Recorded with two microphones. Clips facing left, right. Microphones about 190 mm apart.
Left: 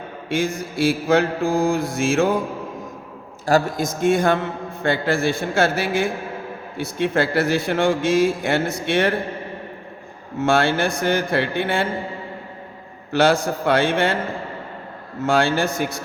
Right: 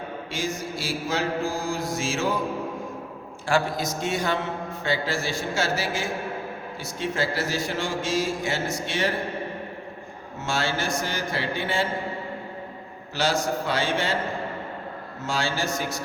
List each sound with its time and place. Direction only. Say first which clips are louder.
0.3 s speech: left 8 dB; 55° left (ahead or behind)
3.4 s a man's voice: left 5 dB; 45° left (ahead or behind)
10.4 s speech: left 9 dB; 60° left (ahead or behind)
13.1 s speech: left 7 dB; 55° left (ahead or behind)
15.2 s speech: left 9 dB; 60° left (ahead or behind)